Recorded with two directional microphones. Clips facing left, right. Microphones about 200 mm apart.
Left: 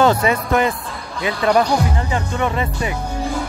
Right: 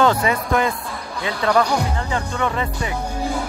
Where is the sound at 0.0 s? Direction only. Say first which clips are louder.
Left 2 dB; 20° left (ahead or behind).